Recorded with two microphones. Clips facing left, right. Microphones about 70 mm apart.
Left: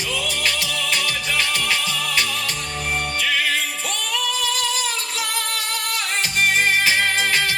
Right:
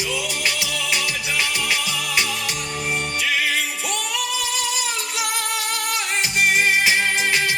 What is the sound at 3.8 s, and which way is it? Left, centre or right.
Music, centre.